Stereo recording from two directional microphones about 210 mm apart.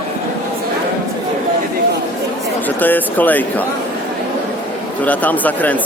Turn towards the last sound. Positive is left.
turn(degrees=5)  # may be behind; listen again after turning